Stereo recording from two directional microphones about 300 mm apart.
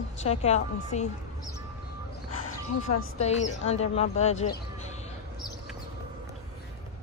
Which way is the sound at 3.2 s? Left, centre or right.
Left.